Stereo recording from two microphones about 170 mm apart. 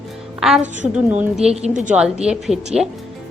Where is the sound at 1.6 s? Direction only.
45° right (ahead or behind).